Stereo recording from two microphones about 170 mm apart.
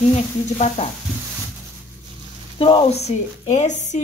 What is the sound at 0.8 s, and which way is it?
Speech, 35° left (ahead or behind).